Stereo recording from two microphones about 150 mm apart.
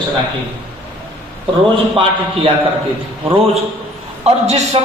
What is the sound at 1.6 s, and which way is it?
Speech, 35° right (ahead or behind).